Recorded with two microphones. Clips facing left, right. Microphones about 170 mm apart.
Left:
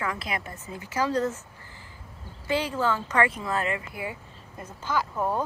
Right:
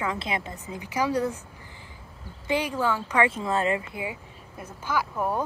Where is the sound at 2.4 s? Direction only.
15° right (ahead or behind).